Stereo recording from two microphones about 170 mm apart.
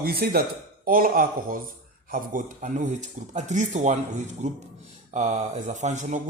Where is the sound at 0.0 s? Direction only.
65° right (ahead or behind).